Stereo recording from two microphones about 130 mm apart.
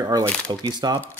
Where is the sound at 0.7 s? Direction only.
35° right (ahead or behind).